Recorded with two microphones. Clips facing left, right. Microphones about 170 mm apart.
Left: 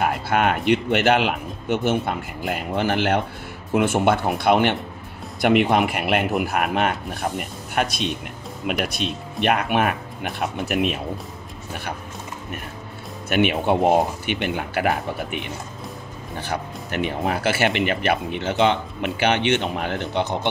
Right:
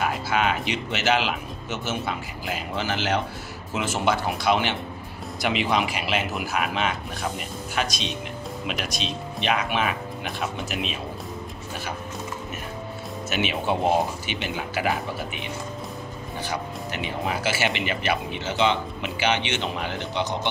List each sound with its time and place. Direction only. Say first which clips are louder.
0.0 s speech: left 4 dB; 55° left (ahead or behind)
13.3 s speech: left 6 dB; 55° left (ahead or behind)